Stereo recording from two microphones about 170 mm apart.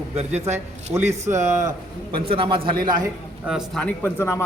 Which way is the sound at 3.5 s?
5° left (ahead or behind).